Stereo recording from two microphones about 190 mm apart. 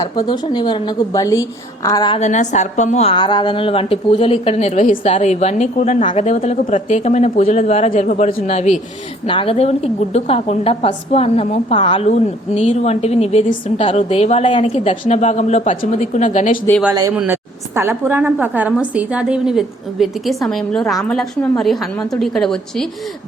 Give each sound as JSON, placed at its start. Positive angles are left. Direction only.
{"t": 0.0, "sound": "a woman's voice", "side_deg": 25}
{"t": 2.1, "sound": "a woman's voice", "side_deg": 40}
{"t": 8.4, "sound": "a woman's voice", "side_deg": 35}
{"t": 16.9, "sound": "a woman's voice", "side_deg": -20}